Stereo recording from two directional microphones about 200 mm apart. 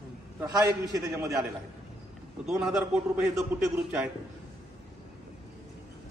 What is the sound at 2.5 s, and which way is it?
A man's voice, centre (ahead or behind).